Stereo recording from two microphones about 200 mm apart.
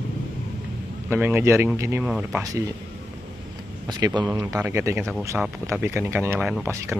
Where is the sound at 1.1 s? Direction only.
10° right (ahead or behind).